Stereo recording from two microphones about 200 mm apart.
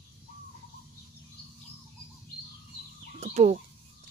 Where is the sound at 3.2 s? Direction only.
35° right (ahead or behind).